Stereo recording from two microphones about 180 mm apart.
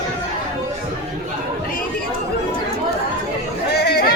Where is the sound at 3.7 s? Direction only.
60° left (ahead or behind).